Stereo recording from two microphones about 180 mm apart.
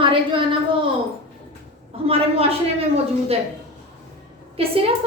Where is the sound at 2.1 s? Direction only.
35° right (ahead or behind).